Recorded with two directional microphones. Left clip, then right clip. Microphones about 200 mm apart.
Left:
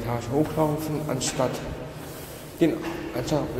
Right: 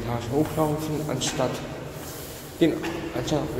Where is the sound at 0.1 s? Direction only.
5° left (ahead or behind).